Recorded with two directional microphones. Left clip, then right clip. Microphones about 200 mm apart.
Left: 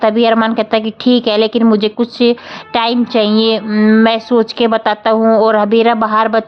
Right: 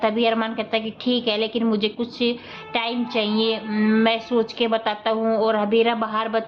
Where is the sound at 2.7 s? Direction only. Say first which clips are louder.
Left 11 dB; 55° left (ahead or behind).